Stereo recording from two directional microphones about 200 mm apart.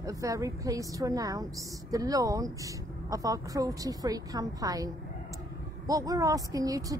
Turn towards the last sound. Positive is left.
turn(degrees=-15)  # may be behind; listen again after turning